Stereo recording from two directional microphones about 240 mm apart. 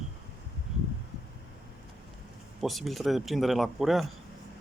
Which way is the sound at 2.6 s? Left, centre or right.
Centre.